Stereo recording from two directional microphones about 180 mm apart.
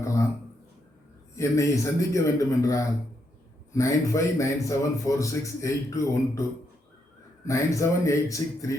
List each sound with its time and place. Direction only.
0.0 s a sound: 15° left (ahead or behind)
1.4 s a man's voice: 15° left (ahead or behind)
7.4 s a man's voice: 15° left (ahead or behind)